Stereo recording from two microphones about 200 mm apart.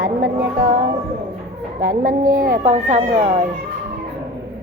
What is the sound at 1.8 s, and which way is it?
Speech, 45° right (ahead or behind).